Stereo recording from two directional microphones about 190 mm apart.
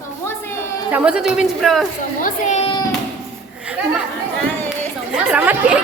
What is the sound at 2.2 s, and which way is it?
Speech, 40° left (ahead or behind).